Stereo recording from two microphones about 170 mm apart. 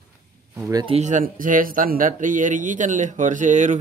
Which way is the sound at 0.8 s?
40° right (ahead or behind).